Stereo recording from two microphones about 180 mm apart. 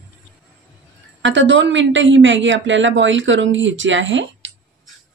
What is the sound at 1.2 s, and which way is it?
A woman's voice, 90° right.